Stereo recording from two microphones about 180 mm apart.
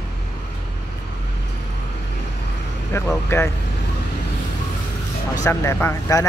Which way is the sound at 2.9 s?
15° left (ahead or behind).